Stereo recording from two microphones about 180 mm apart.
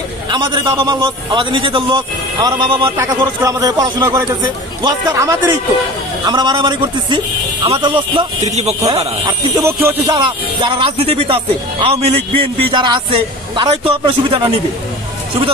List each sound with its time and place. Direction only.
0.3 s speech: 25° right (ahead or behind)
9.2 s speech: 15° right (ahead or behind)